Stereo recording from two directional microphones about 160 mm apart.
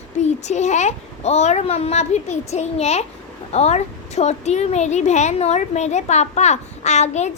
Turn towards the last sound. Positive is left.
turn(degrees=45)  # may be behind; listen again after turning